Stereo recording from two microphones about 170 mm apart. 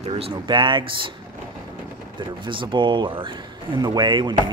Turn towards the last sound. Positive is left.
turn(degrees=-25)  # may be behind; listen again after turning